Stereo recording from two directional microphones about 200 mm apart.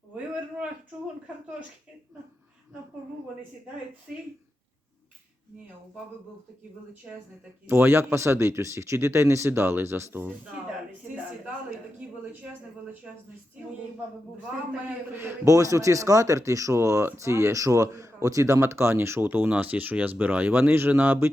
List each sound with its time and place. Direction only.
7.7 s a man's voice: 10° right (ahead or behind)
11.9 s a sound: 5° right (ahead or behind)
15.1 s a man's voice: 10° right (ahead or behind)